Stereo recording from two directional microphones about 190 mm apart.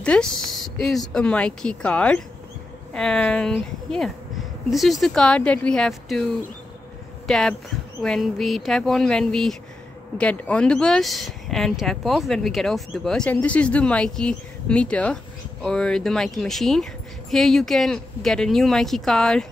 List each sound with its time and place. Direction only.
0.0 s speech: 5° left (ahead or behind)